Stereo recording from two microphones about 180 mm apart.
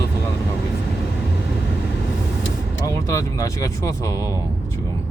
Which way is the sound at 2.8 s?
20° left (ahead or behind).